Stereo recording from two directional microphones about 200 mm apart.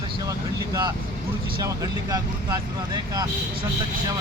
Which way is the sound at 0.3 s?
20° right (ahead or behind).